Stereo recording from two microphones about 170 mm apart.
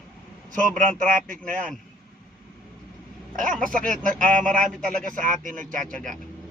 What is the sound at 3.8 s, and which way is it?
Speech, 50° right (ahead or behind).